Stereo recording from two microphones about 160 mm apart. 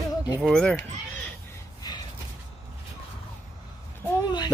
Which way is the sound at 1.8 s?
25° left (ahead or behind).